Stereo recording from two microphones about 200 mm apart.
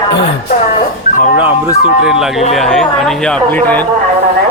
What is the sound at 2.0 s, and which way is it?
Speech, 5° right (ahead or behind).